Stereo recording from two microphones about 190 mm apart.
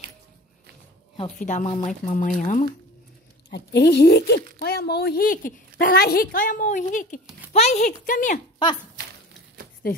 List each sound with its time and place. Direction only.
1.4 s a woman's voice: 40° left (ahead or behind)
3.4 s a woman's voice: 60° left (ahead or behind); by 8.4 s 45° left (ahead or behind)
9.8 s speech: 50° left (ahead or behind)